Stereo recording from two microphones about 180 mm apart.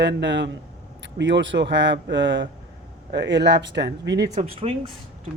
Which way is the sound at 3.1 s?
75° right (ahead or behind).